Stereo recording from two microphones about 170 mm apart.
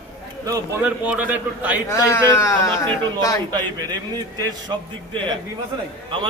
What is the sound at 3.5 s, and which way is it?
Speech, 25° right (ahead or behind).